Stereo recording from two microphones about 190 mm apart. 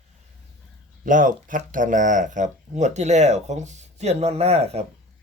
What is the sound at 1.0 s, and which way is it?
Speech, 45° right (ahead or behind).